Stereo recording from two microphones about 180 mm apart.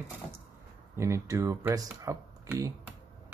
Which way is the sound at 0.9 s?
15° right (ahead or behind).